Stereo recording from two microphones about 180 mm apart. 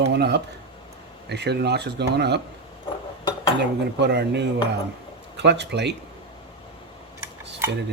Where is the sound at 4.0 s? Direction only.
70° right (ahead or behind).